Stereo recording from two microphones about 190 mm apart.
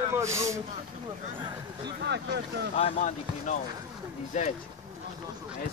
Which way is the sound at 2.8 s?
40° left (ahead or behind).